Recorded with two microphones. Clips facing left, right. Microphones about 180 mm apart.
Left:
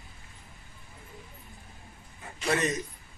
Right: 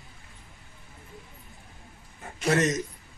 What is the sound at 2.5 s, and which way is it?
Speech, 80° right.